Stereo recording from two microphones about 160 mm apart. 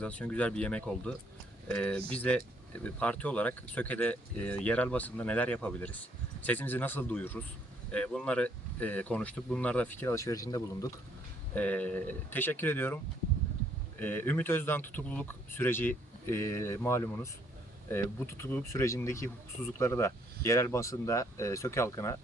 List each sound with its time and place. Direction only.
0.0 s speech: 10° left (ahead or behind)
11.5 s speech: 10° left (ahead or behind)
14.0 s speech: 10° left (ahead or behind)